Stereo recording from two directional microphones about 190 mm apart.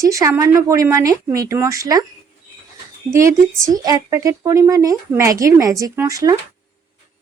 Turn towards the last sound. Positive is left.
turn(degrees=-20)  # may be behind; listen again after turning